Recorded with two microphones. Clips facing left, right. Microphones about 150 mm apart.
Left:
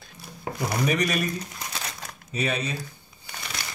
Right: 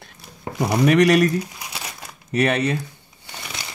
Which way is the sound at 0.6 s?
75° right (ahead or behind).